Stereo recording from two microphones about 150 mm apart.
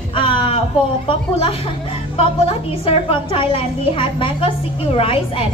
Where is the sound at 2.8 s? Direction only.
35° left (ahead or behind).